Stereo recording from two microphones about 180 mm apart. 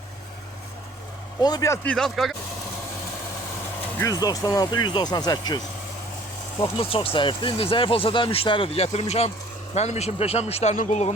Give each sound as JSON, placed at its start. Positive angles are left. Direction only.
{"t": 1.4, "sound": "speech", "side_deg": 20}
{"t": 3.9, "sound": "speech", "side_deg": 20}
{"t": 6.7, "sound": "speech", "side_deg": 30}